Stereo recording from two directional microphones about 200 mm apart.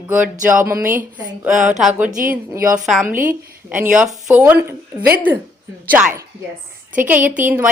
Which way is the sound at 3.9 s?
5° right (ahead or behind).